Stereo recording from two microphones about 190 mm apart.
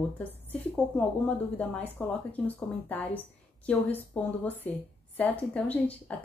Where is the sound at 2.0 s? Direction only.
10° left (ahead or behind).